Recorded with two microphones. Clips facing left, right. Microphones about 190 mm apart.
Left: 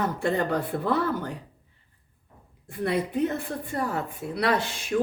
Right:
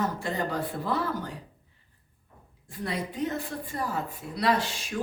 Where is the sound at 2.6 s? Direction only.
60° left (ahead or behind).